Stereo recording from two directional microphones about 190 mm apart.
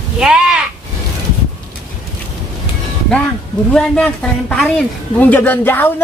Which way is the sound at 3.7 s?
5° left (ahead or behind).